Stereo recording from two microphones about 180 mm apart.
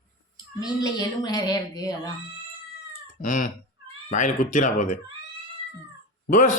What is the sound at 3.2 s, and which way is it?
Speech, 45° left (ahead or behind).